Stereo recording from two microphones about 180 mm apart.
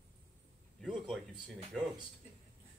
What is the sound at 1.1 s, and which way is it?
Speech, centre (ahead or behind).